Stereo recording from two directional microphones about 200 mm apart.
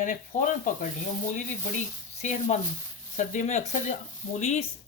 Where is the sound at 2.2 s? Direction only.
35° left (ahead or behind).